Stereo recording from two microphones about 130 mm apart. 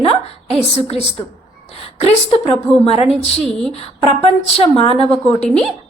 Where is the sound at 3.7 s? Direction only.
50° left (ahead or behind).